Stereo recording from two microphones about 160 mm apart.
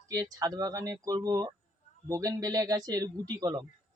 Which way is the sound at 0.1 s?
20° right (ahead or behind).